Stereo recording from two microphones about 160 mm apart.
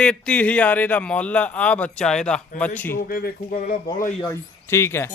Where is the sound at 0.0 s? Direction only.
5° left (ahead or behind).